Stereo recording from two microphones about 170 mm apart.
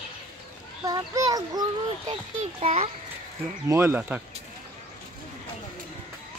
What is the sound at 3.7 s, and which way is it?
Speech, 15° right (ahead or behind).